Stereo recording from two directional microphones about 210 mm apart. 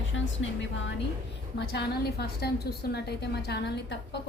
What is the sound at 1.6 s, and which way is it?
A woman's voice, 50° left (ahead or behind).